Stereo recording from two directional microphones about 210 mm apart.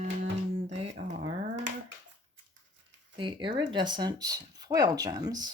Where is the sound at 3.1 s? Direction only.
20° right (ahead or behind).